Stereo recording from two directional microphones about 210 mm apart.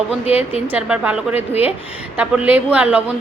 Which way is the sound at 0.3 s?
30° left (ahead or behind).